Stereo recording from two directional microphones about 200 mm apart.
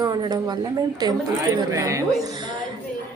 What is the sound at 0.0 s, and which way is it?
A man's voice, 20° right (ahead or behind).